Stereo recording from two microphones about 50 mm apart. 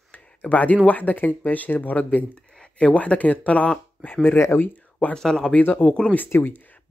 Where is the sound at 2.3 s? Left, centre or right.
Centre.